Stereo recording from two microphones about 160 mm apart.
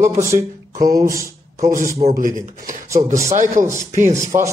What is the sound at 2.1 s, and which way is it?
Speech, 55° right (ahead or behind).